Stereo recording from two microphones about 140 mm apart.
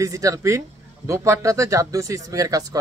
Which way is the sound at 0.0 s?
25° right (ahead or behind).